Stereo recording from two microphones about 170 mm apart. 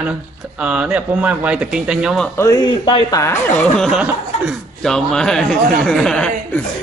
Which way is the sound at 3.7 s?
Centre (ahead or behind).